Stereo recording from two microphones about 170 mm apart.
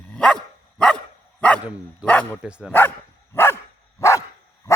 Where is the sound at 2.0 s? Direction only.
10° left (ahead or behind).